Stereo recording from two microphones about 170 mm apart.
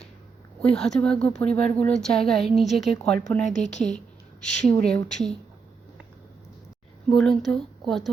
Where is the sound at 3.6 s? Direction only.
45° left (ahead or behind).